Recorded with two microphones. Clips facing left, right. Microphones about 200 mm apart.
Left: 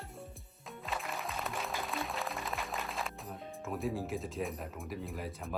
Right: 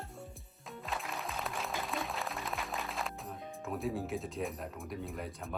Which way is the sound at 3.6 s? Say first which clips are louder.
Even; centre (ahead or behind).